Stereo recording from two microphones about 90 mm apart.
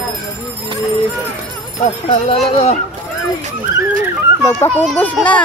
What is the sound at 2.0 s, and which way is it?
Speech, 90° left.